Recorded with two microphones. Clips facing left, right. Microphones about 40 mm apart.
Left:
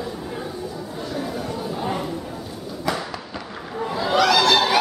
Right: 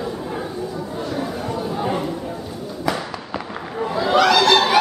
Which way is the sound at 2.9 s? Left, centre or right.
Centre.